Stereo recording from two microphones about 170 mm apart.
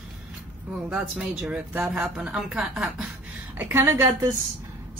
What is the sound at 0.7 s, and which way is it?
A woman's voice, 5° right (ahead or behind).